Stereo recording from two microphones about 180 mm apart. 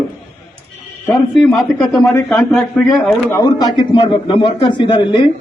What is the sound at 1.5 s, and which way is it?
A man's voice, centre (ahead or behind).